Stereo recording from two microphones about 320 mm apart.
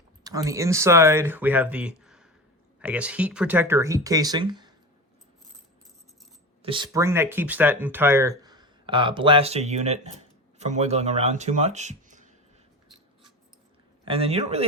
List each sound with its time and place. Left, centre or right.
0.3 s speech: centre
6.6 s speech: centre
14.0 s speech: centre